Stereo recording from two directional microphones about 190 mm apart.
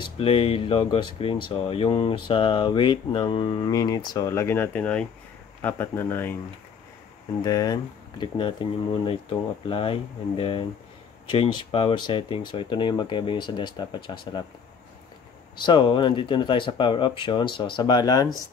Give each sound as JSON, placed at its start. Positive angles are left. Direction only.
{"t": 0.0, "sound": "speech", "side_deg": 30}
{"t": 7.4, "sound": "speech", "side_deg": 20}
{"t": 15.6, "sound": "speech", "side_deg": 25}